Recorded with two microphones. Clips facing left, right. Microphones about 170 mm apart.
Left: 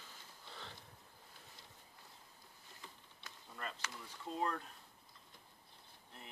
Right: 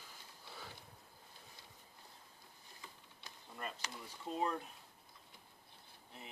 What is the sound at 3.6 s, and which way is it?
Speech, 15° right (ahead or behind).